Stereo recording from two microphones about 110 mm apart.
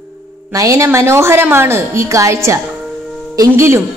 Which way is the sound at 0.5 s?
30° right (ahead or behind).